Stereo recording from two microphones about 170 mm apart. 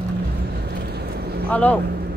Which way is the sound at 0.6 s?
70° right (ahead or behind).